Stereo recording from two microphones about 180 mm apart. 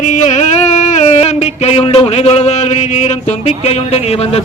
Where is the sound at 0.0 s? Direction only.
40° left (ahead or behind).